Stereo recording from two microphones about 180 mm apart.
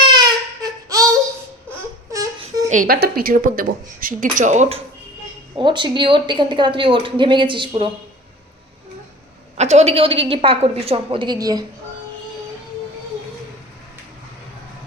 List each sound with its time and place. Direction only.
0.0 s baby cry: 25° right (ahead or behind)
2.6 s speech: 50° right (ahead or behind)
5.5 s a woman's voice: 25° right (ahead or behind)
9.6 s a woman's voice: 40° right (ahead or behind); by 11.6 s 20° right (ahead or behind)